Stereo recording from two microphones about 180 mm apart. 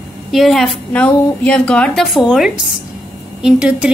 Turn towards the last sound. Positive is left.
turn(degrees=-5)  # may be behind; listen again after turning